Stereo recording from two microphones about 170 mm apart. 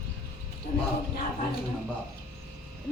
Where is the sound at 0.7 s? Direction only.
45° left (ahead or behind).